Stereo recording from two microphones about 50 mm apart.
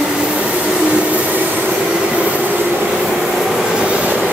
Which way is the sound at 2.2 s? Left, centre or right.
Right.